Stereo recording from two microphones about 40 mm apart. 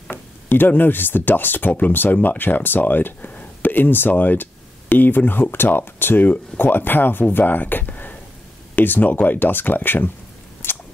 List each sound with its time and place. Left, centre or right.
0.1 s speech: left
4.1 s speech: left
6.7 s speech: left
10.6 s cap gun: left